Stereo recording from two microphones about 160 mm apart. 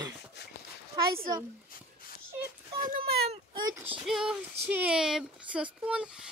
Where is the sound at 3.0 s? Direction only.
35° right (ahead or behind).